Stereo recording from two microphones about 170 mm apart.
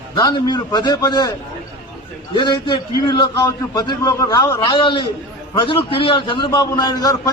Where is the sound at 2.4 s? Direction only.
30° left (ahead or behind).